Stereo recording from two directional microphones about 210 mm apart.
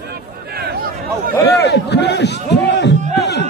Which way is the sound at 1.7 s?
55° left (ahead or behind).